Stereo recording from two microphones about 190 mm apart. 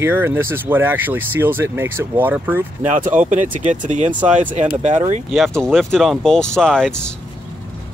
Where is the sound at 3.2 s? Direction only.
40° right (ahead or behind).